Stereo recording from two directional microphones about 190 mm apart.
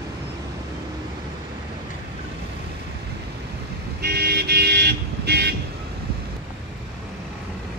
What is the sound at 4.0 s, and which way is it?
Vehicle, 55° right (ahead or behind).